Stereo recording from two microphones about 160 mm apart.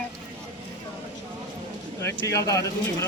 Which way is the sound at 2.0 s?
15° left (ahead or behind).